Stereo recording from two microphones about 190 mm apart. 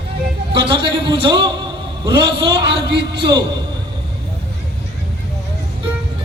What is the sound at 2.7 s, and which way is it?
Speech, 60° right (ahead or behind).